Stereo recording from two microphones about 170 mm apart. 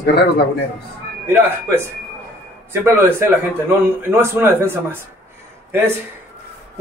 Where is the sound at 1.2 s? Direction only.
15° right (ahead or behind).